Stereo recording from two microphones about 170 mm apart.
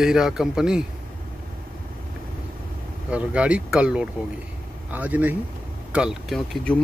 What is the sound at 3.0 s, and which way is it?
Speech, 5° right (ahead or behind).